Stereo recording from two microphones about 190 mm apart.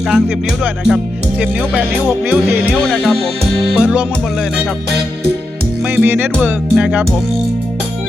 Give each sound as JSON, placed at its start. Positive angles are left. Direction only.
{"t": 0.1, "sound": "speech", "side_deg": -5}
{"t": 5.8, "sound": "music", "side_deg": -5}
{"t": 6.4, "sound": "speech", "side_deg": -5}